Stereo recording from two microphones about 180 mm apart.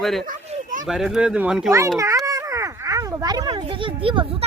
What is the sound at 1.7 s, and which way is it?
Speech, 15° right (ahead or behind).